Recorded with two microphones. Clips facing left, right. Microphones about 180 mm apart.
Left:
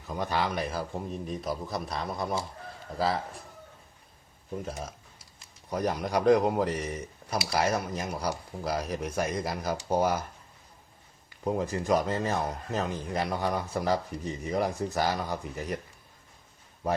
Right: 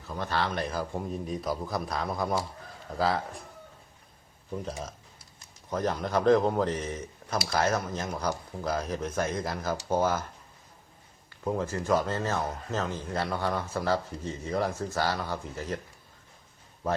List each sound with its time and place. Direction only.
0.1 s a man's voice: 15° left (ahead or behind)
4.6 s speech: 10° left (ahead or behind)
11.4 s speech: 15° left (ahead or behind)